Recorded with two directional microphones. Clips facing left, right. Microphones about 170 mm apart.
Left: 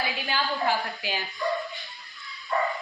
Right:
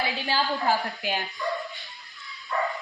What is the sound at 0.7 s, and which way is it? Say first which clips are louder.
Speech: right 2 dB; 50° right (ahead or behind).